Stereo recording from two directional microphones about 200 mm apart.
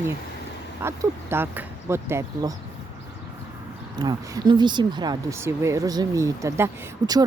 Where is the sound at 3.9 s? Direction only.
20° right (ahead or behind).